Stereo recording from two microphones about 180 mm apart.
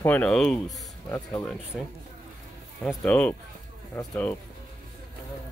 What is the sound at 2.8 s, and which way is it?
Speech, 5° left (ahead or behind).